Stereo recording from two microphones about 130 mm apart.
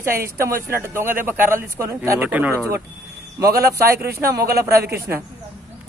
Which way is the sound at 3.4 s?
25° right (ahead or behind).